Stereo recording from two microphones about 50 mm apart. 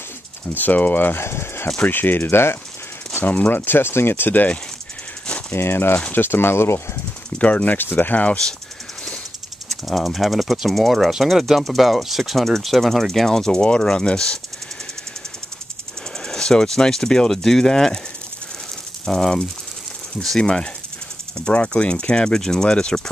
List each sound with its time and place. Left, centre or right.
0.6 s speech: left
1.2 s speech: left
1.8 s speech: left
3.3 s speech: left
5.5 s speech: left
7.3 s speech: left
9.7 s speech: centre
16.3 s speech: centre
19.0 s speech: centre